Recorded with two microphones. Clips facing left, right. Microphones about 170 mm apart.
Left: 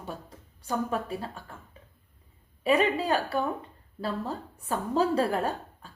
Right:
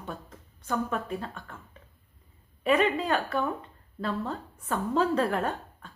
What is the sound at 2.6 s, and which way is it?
A woman's voice, 35° left (ahead or behind).